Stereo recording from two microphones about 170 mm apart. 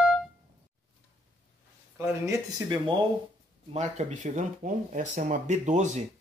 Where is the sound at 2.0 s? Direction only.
15° right (ahead or behind).